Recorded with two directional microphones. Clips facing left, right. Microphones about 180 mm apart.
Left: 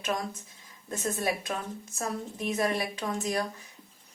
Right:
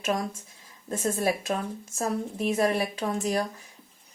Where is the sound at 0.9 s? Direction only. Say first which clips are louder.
Right 4 dB; 30° right (ahead or behind).